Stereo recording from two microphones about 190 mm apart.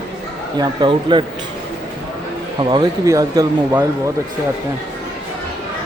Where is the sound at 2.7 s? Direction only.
20° right (ahead or behind).